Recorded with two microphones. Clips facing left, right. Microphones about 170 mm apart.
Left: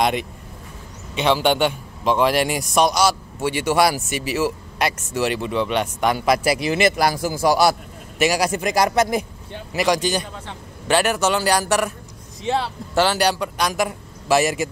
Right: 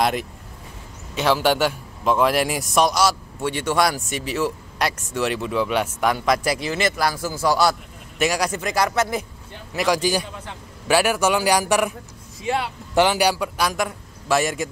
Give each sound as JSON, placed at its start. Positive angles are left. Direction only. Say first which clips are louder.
{"t": 0.0, "sound": "a man's voice", "louder": "left 1 dB", "side_deg": 0}
{"t": 9.8, "sound": "speech", "louder": "left 1 dB", "side_deg": -5}
{"t": 12.4, "sound": "speech", "louder": "left 2 dB", "side_deg": 25}
{"t": 12.9, "sound": "a man's voice", "louder": "right 1 dB", "side_deg": -15}